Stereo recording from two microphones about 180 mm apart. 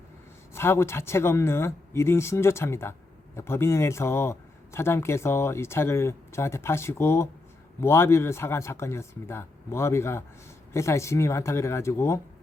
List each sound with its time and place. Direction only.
0.5 s speech: 15° left (ahead or behind)